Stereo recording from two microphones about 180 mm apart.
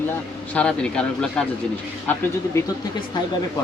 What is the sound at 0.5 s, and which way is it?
Speech, 5° left (ahead or behind).